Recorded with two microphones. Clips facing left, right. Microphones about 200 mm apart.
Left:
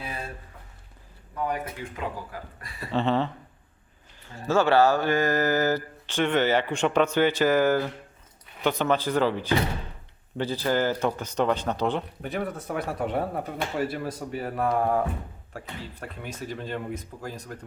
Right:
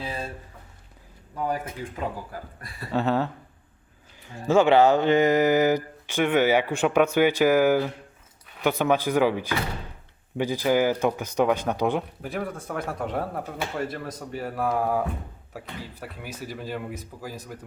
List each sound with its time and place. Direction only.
0.0 s a sound: 30° right (ahead or behind)
2.9 s speech: 5° right (ahead or behind)
4.3 s speech: 15° right (ahead or behind)